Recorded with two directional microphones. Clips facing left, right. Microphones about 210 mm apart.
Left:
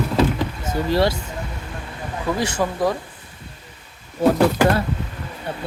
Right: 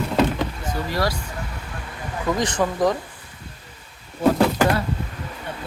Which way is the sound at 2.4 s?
10° left (ahead or behind).